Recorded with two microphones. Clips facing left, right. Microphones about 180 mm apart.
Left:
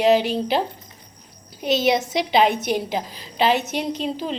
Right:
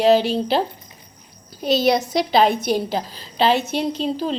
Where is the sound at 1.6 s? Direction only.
35° right (ahead or behind).